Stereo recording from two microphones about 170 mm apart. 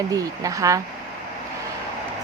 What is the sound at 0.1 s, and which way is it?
Speech, 20° right (ahead or behind).